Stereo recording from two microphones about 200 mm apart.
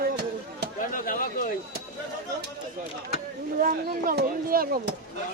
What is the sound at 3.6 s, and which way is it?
Speech, 45° right (ahead or behind).